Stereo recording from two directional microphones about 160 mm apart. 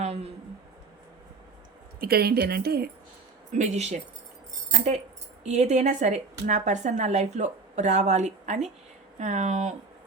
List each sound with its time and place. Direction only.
0.0 s a sound: 40° right (ahead or behind)
2.0 s speech: 75° right (ahead or behind)
3.5 s a woman's voice: 45° right (ahead or behind)
5.5 s a woman's voice: 45° right (ahead or behind)